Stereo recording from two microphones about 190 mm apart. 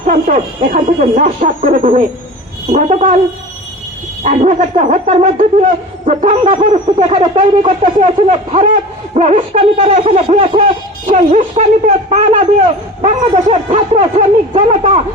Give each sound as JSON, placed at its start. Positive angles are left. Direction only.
{"t": 0.7, "sound": "speech", "side_deg": -45}
{"t": 4.2, "sound": "speech", "side_deg": -40}